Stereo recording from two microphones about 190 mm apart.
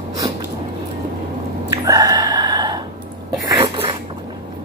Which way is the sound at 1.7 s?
20° right (ahead or behind).